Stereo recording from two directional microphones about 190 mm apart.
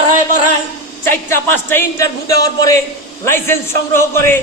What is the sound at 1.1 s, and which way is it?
A man's voice, 10° left (ahead or behind).